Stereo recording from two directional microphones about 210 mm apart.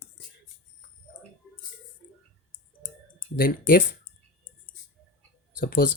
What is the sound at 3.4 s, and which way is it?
Speech, 45° left (ahead or behind).